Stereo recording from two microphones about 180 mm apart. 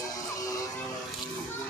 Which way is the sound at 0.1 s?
20° left (ahead or behind).